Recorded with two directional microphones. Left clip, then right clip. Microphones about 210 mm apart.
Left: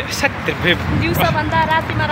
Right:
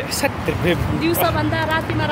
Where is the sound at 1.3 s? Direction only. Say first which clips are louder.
Left 4 dB; 35° right (ahead or behind).